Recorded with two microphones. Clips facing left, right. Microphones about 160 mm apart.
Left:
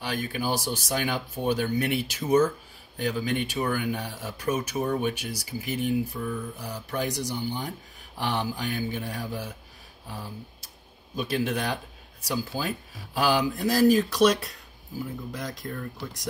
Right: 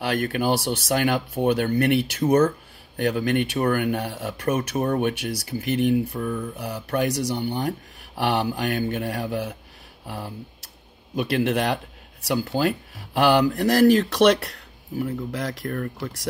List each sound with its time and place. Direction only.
0.0 s speech: 70° right (ahead or behind)
10.0 s speech: 75° right (ahead or behind)